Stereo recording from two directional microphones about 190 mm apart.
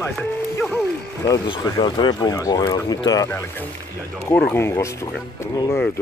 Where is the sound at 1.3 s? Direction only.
20° left (ahead or behind).